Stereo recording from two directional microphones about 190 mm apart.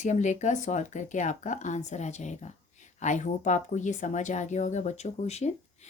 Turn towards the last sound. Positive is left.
turn(degrees=35)  # may be behind; listen again after turning